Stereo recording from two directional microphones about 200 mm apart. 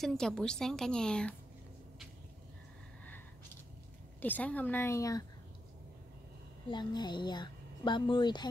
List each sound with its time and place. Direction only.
0.0 s a woman's voice: centre (ahead or behind)
4.2 s a woman's voice: 10° left (ahead or behind)
6.7 s speech: 20° left (ahead or behind)